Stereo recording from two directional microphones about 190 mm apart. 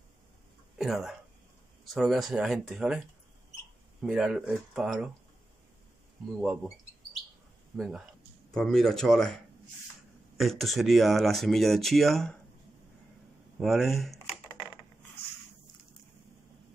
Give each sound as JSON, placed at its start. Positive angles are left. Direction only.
{"t": 0.7, "sound": "speech", "side_deg": 0}
{"t": 4.0, "sound": "speech", "side_deg": -5}
{"t": 6.3, "sound": "speech", "side_deg": -5}
{"t": 7.7, "sound": "speech", "side_deg": 0}
{"t": 13.6, "sound": "speech", "side_deg": 0}